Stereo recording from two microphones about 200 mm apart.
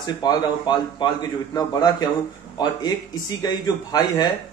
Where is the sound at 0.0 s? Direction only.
20° left (ahead or behind).